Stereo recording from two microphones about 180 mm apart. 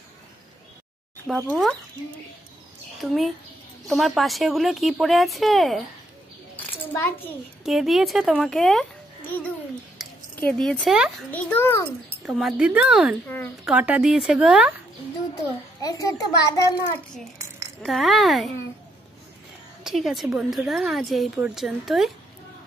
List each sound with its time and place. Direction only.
1.2 s speech: 5° left (ahead or behind)
3.0 s speech: centre (ahead or behind)
6.5 s a sound: 10° left (ahead or behind)
7.6 s speech: centre (ahead or behind)
10.0 s a sound: centre (ahead or behind)
10.3 s a child's voice: 10° left (ahead or behind)
12.3 s speech: 5° right (ahead or behind)
15.8 s a child's voice: 20° left (ahead or behind)
17.8 s speech: centre (ahead or behind)
19.8 s speech: centre (ahead or behind)